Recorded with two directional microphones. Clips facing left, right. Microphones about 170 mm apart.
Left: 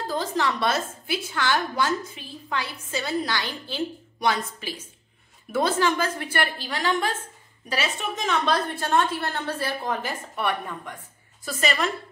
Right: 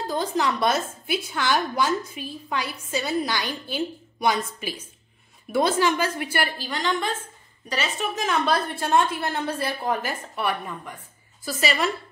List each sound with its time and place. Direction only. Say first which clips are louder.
0.0 s a woman's voice: right 1 dB; 15° right (ahead or behind)